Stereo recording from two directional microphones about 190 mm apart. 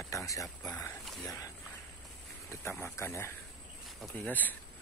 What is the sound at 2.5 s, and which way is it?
Speech, 15° left (ahead or behind).